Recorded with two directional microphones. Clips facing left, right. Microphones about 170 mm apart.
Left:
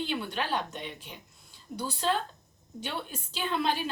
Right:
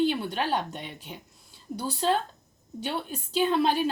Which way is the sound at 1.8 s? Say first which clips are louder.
Right 4 dB; 35° right (ahead or behind).